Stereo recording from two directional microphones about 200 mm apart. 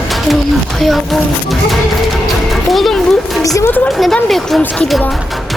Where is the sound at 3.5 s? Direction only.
10° left (ahead or behind).